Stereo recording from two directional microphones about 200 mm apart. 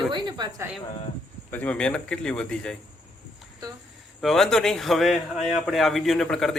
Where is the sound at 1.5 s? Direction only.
5° left (ahead or behind).